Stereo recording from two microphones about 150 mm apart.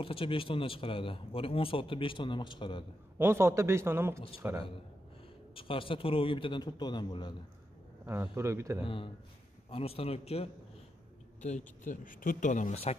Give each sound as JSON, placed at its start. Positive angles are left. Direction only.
{"t": 0.0, "sound": "a man's voice", "side_deg": 35}
{"t": 3.2, "sound": "a man's voice", "side_deg": -15}
{"t": 5.5, "sound": "a man's voice", "side_deg": 35}
{"t": 8.1, "sound": "a man's voice", "side_deg": -15}
{"t": 8.8, "sound": "a man's voice", "side_deg": 35}
{"t": 11.4, "sound": "speech", "side_deg": 55}